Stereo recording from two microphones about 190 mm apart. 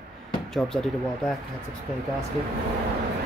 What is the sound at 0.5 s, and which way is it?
Speech, centre (ahead or behind).